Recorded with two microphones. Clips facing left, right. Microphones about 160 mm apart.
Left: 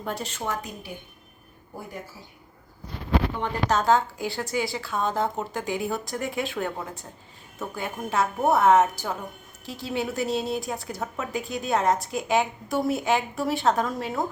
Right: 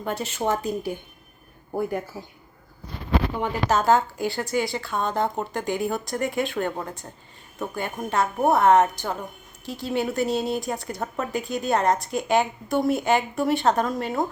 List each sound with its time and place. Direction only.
0.0 s speech: centre (ahead or behind)
0.4 s a woman's voice: 25° right (ahead or behind)
3.3 s speech: 5° right (ahead or behind)
7.8 s speech: centre (ahead or behind)